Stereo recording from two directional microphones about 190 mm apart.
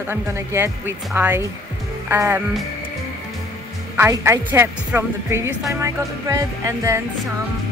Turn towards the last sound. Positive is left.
turn(degrees=-15)  # may be behind; listen again after turning